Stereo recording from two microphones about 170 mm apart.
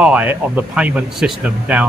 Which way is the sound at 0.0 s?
10° right (ahead or behind).